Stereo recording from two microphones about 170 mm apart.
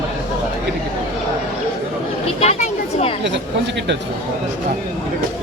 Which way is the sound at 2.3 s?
40° left (ahead or behind).